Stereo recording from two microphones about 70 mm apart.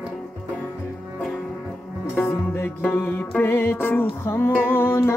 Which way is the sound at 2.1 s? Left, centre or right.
Left.